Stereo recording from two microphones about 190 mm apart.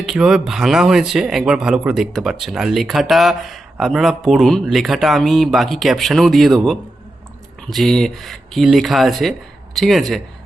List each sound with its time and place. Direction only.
0.0 s speech: 5° right (ahead or behind)